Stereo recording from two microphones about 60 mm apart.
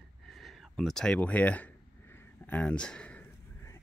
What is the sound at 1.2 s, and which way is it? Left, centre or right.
Speech, left.